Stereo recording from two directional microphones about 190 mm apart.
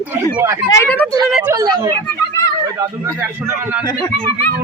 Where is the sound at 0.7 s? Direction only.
10° left (ahead or behind).